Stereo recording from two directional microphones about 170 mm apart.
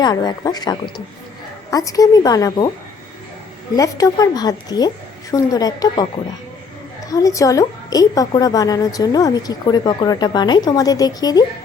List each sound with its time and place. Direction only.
0.0 s a woman's voice: 25° left (ahead or behind)
3.8 s a woman's voice: 20° left (ahead or behind)
7.1 s a woman's voice: 20° left (ahead or behind)